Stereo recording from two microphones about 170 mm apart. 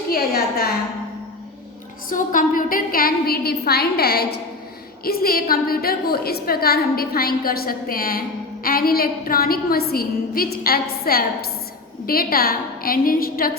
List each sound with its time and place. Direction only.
0.1 s a woman's voice: 65° left (ahead or behind)
2.0 s a woman's voice: 55° left (ahead or behind)